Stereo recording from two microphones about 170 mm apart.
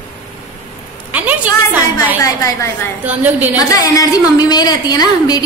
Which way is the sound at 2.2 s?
20° left (ahead or behind).